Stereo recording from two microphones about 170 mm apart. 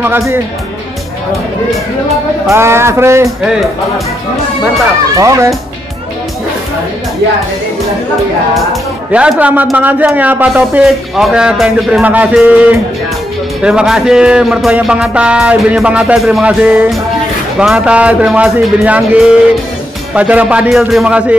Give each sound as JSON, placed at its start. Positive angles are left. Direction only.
{"t": 2.5, "sound": "a man's voice", "side_deg": -15}
{"t": 5.1, "sound": "a man's voice", "side_deg": -20}
{"t": 9.1, "sound": "a man's voice", "side_deg": -5}